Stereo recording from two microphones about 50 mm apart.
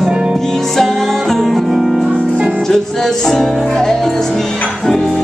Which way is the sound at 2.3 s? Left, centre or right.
Right.